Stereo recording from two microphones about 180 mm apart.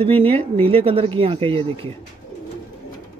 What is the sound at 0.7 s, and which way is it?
Speech, 30° right (ahead or behind).